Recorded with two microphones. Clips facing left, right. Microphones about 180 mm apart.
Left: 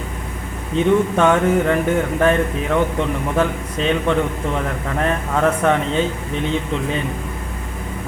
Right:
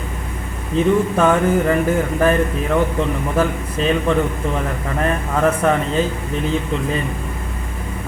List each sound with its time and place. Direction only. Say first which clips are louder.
0.8 s speech: even; centre (ahead or behind)